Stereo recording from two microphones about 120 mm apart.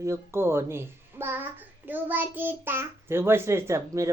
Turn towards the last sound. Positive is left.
turn(degrees=-25)  # may be behind; listen again after turning